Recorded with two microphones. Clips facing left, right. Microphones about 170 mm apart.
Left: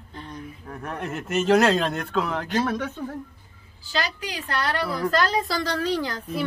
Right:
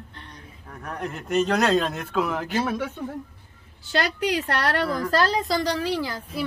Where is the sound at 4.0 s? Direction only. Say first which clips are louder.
Right 6 dB; 70° right (ahead or behind).